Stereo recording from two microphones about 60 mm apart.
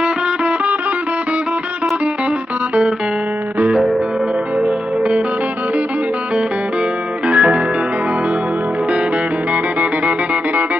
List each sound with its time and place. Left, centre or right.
7.2 s music: centre